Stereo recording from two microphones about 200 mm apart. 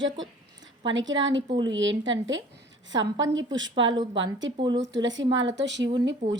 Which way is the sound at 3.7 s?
25° right (ahead or behind).